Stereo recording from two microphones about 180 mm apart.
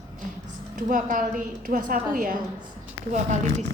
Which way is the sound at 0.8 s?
50° right (ahead or behind).